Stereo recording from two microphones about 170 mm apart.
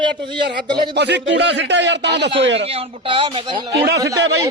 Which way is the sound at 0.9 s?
90° right.